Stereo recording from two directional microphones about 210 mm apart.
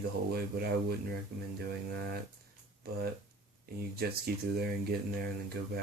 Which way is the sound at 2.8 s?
45° right (ahead or behind).